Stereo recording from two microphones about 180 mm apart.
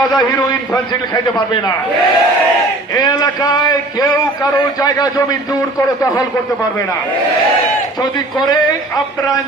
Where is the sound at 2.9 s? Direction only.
20° left (ahead or behind).